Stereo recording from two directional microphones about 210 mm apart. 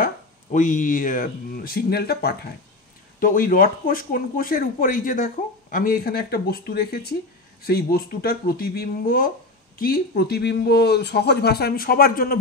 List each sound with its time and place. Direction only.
0.0 s speech: 40° left (ahead or behind)